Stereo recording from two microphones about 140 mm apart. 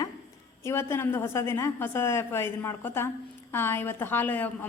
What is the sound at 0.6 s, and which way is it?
A woman's voice, 20° left (ahead or behind).